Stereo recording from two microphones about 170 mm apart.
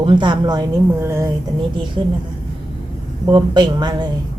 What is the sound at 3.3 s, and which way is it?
Speech, 25° right (ahead or behind).